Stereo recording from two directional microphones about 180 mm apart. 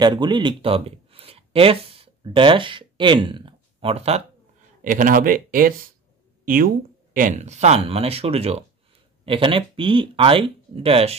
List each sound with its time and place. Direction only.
0.0 s speech: 25° right (ahead or behind)
4.8 s speech: 45° right (ahead or behind)
7.3 s speech: 40° right (ahead or behind)